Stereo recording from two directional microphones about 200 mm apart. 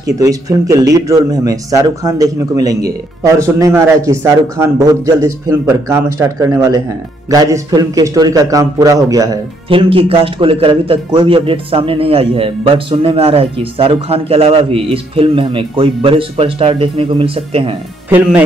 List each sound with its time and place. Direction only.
0.1 s a man's voice: 15° right (ahead or behind)